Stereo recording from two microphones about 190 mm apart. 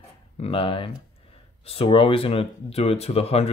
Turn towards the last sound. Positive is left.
turn(degrees=35)  # may be behind; listen again after turning